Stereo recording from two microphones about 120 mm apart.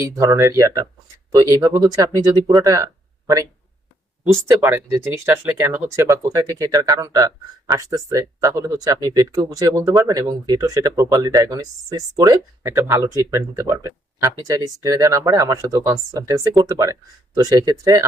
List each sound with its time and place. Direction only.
0.0 s speech: 25° right (ahead or behind)
2.6 s a sound: 30° right (ahead or behind)
4.4 s speech: 20° right (ahead or behind)